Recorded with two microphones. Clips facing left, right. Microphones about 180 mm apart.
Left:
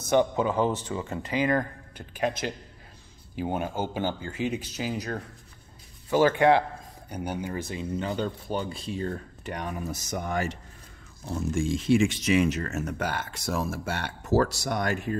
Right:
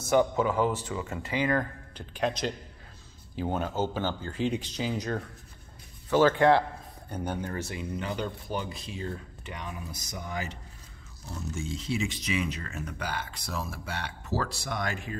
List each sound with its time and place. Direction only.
0.1 s speech: 20° left (ahead or behind)
2.1 s speech: 10° left (ahead or behind)
8.0 s speech: 30° left (ahead or behind)
9.0 s speech: 50° left (ahead or behind)
11.8 s speech: 50° left (ahead or behind)